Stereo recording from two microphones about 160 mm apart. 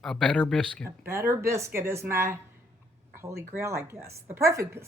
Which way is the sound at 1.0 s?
15° right (ahead or behind).